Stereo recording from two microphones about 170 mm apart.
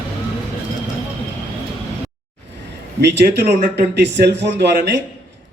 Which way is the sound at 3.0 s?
80° right.